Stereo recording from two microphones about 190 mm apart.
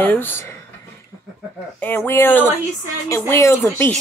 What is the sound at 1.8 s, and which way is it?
Speech, 10° left (ahead or behind).